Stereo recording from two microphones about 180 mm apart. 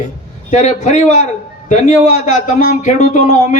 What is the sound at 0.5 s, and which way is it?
A man's voice, 40° left (ahead or behind).